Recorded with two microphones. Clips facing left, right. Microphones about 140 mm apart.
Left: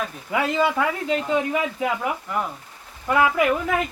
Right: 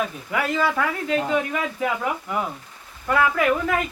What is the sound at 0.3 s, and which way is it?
Speech, 20° left (ahead or behind).